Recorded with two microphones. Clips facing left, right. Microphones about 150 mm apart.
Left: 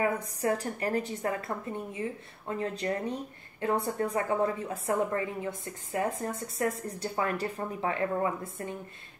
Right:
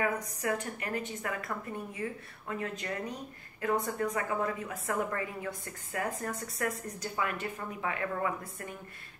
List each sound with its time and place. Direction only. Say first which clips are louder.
0.0 s a woman's voice: left 3 dB; 30° left (ahead or behind)